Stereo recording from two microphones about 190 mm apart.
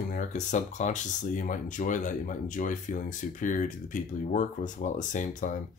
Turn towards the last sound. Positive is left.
turn(degrees=40)  # may be behind; listen again after turning